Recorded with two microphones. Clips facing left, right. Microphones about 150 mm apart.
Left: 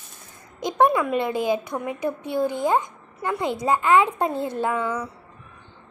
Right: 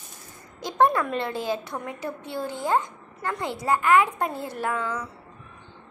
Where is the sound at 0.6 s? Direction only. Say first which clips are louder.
Left 2 dB; 15° left (ahead or behind).